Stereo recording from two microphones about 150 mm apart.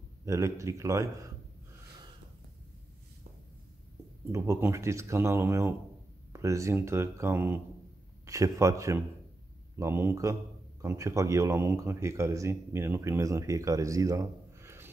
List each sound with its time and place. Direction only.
0.2 s speech: 20° right (ahead or behind)
4.3 s speech: 20° right (ahead or behind)